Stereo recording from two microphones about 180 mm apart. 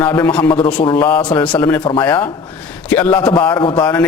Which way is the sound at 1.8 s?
25° left (ahead or behind).